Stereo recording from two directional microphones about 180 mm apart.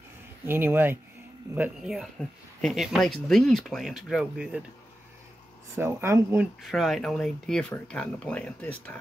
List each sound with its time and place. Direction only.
0.5 s speech: 10° right (ahead or behind)
5.8 s speech: 15° right (ahead or behind)
6.6 s speech: centre (ahead or behind)